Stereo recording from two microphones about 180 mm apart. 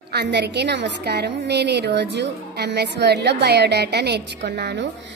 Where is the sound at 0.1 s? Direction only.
70° right (ahead or behind).